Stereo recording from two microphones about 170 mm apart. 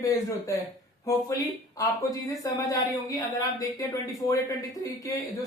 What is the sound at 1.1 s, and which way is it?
Speech, 20° left (ahead or behind).